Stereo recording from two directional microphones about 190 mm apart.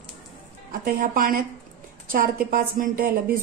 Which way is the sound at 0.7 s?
45° right (ahead or behind).